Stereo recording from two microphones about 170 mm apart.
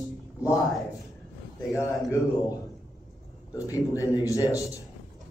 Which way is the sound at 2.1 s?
25° left (ahead or behind).